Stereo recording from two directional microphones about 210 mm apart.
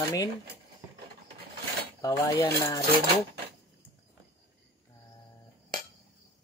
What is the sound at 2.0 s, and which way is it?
Speech, 15° left (ahead or behind).